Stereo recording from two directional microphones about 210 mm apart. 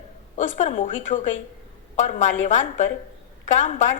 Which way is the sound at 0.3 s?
35° left (ahead or behind).